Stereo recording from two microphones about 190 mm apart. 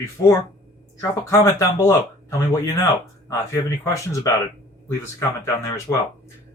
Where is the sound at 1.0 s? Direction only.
15° left (ahead or behind).